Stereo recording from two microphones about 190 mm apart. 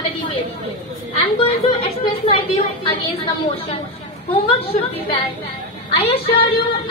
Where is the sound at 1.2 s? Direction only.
30° left (ahead or behind).